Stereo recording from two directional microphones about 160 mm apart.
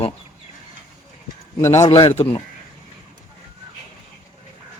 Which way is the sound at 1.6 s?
15° left (ahead or behind).